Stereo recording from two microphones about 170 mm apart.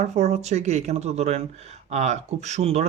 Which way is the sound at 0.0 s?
40° right (ahead or behind).